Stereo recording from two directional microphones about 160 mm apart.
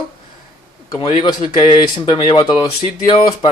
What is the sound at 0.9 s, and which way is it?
Speech, 30° left (ahead or behind).